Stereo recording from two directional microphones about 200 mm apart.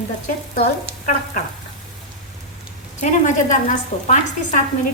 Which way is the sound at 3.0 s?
40° left (ahead or behind).